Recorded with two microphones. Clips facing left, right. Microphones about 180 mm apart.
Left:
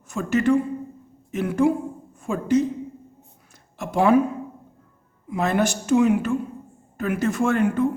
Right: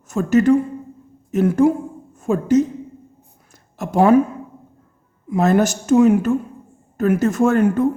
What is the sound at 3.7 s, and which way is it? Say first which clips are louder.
Speech: right 4 dB; 45° right (ahead or behind).